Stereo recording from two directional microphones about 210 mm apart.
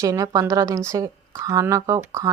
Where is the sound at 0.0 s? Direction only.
15° right (ahead or behind).